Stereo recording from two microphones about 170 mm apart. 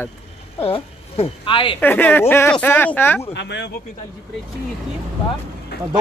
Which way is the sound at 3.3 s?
90° left.